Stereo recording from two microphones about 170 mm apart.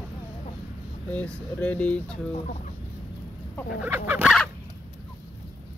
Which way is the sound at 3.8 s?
10° right (ahead or behind).